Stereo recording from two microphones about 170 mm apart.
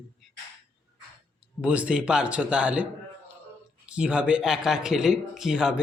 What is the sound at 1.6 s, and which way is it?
A man's voice, 5° right (ahead or behind).